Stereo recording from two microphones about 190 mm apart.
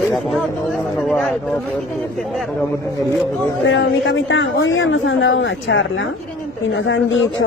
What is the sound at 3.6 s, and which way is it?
A woman's voice, 80° left.